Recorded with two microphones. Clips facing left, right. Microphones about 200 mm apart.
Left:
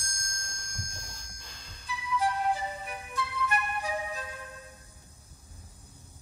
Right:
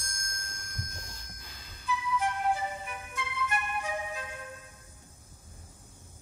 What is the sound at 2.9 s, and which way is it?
Music, 35° left (ahead or behind).